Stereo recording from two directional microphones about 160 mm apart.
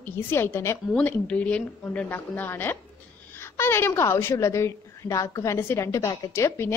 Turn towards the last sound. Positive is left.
turn(degrees=15)  # may be behind; listen again after turning